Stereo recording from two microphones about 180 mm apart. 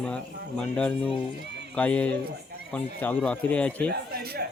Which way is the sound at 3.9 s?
60° right (ahead or behind).